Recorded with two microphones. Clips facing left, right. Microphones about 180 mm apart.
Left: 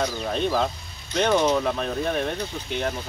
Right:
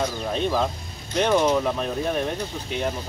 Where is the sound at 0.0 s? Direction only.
Centre (ahead or behind).